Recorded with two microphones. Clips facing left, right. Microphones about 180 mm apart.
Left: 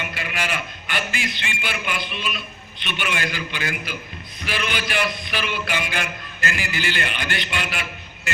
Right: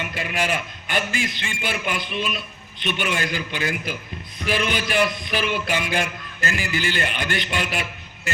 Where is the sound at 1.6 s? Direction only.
45° right (ahead or behind).